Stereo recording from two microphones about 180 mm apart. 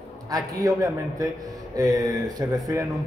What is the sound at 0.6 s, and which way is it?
Speech, 20° right (ahead or behind).